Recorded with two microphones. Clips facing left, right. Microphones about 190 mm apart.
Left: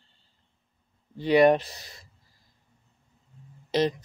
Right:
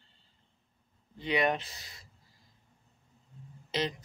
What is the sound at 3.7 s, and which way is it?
Music, 40° left (ahead or behind).